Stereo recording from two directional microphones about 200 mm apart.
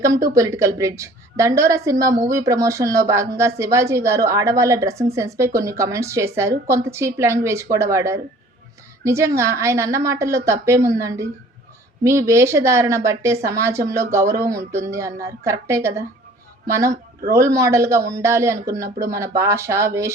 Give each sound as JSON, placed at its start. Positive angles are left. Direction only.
{"t": 0.0, "sound": "a woman's voice", "side_deg": -15}